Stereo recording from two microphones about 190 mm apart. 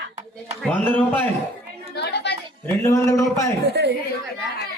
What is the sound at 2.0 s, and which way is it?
Chatter, 60° left (ahead or behind).